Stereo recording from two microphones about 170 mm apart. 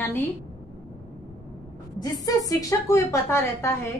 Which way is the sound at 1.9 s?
20° left (ahead or behind).